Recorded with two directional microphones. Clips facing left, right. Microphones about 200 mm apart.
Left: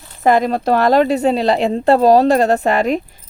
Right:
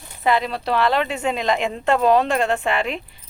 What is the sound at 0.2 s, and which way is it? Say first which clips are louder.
A woman's voice: left 7 dB; 45° left (ahead or behind).